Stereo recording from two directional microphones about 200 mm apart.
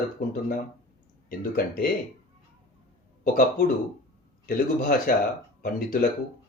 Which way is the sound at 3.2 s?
45° left (ahead or behind).